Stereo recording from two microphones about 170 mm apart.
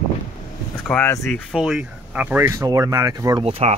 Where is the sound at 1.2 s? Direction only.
Centre (ahead or behind); by 3.4 s 20° right (ahead or behind).